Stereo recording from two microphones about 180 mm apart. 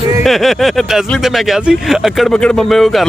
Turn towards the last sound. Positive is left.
turn(degrees=0)  # may be behind; listen again after turning